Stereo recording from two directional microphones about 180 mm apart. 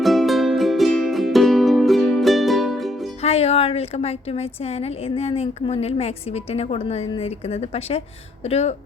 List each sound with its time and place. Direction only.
0.0 s music: centre (ahead or behind)
3.2 s a woman's voice: 35° left (ahead or behind)